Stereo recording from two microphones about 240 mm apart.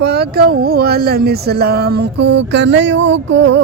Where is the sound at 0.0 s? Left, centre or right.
Right.